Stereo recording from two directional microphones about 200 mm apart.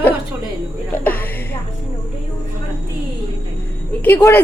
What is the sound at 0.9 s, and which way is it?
Music, 10° left (ahead or behind).